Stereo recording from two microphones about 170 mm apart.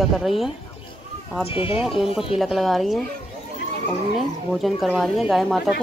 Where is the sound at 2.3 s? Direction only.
Centre (ahead or behind).